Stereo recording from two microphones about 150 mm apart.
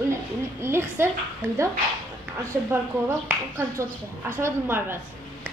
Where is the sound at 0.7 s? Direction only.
15° right (ahead or behind).